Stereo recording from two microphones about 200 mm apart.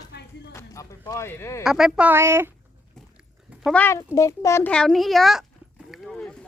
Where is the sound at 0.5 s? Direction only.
15° left (ahead or behind).